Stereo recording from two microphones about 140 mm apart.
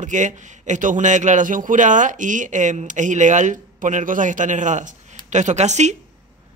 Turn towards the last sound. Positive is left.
turn(degrees=-55)  # may be behind; listen again after turning